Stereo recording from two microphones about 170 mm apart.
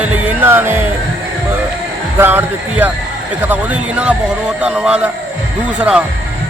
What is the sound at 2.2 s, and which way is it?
Speech, 10° right (ahead or behind).